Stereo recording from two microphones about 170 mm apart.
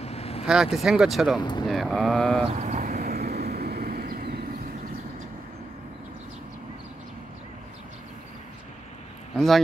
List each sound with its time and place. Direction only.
0.0 s vehicle: 35° left (ahead or behind)
0.5 s speech: centre (ahead or behind)
2.5 s vehicle: 40° right (ahead or behind); by 4.5 s 70° right (ahead or behind)
9.3 s speech: centre (ahead or behind)